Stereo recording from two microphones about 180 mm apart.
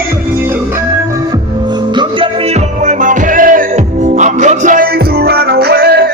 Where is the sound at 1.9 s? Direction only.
30° right (ahead or behind); by 6.1 s 60° right (ahead or behind).